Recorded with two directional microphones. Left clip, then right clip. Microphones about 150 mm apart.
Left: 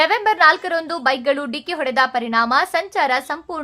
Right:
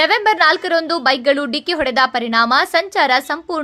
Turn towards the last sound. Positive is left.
turn(degrees=-25)  # may be behind; listen again after turning